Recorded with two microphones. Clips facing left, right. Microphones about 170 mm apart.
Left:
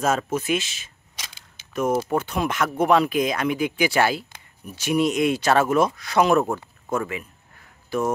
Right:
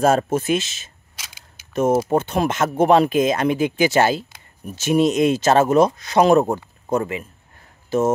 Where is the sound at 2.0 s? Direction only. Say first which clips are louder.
Right 4 dB; 25° right (ahead or behind).